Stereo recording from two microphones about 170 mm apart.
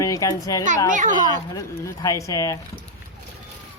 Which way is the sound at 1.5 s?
20° left (ahead or behind).